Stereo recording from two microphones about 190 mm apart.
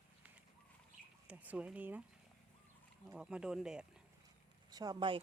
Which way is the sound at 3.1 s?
5° right (ahead or behind).